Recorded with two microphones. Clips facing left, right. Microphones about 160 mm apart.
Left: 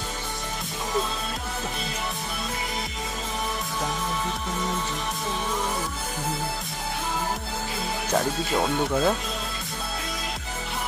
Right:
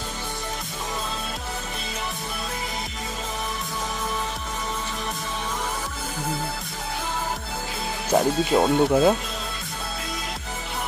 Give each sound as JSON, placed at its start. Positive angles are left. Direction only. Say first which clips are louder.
{"t": 8.1, "sound": "speech", "louder": "right 6 dB", "side_deg": -20}